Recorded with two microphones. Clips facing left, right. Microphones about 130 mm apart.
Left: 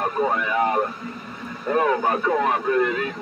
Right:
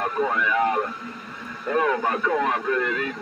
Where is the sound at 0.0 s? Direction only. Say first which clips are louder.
Left 1 dB; 25° left (ahead or behind).